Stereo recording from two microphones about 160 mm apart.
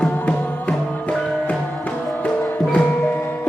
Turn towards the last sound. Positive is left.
turn(degrees=10)  # may be behind; listen again after turning